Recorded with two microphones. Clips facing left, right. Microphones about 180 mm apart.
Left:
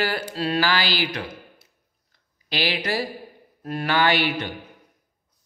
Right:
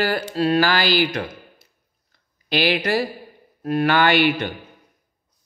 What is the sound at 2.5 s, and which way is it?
Speech, 55° right (ahead or behind).